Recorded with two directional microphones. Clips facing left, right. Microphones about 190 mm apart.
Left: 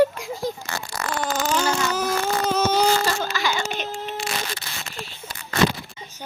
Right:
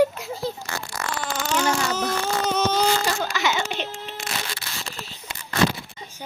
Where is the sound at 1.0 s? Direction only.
40° left (ahead or behind).